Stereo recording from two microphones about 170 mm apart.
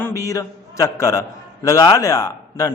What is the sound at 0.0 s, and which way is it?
Mantra, 20° left (ahead or behind).